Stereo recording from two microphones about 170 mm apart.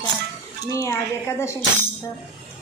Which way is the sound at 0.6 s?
15° left (ahead or behind).